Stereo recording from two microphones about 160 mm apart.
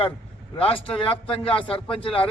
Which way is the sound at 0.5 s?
35° left (ahead or behind).